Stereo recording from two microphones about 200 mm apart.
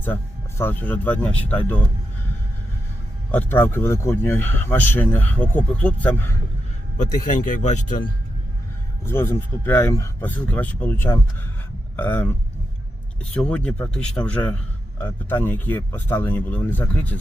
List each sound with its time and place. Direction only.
0.6 s speech: 10° left (ahead or behind)
3.3 s speech: 10° left (ahead or behind)
7.0 s speech: 40° left (ahead or behind)
9.0 s speech: 10° left (ahead or behind)
13.3 s speech: 5° left (ahead or behind)